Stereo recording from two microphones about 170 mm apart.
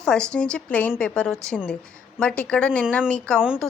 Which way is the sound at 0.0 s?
5° left (ahead or behind).